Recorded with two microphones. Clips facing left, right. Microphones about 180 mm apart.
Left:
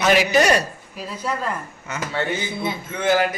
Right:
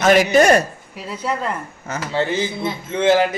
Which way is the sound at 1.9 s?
30° right (ahead or behind).